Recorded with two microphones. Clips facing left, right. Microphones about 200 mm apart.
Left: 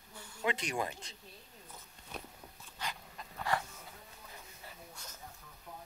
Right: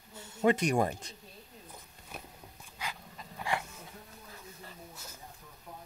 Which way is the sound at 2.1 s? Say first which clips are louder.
Left 1 dB; 5° right (ahead or behind).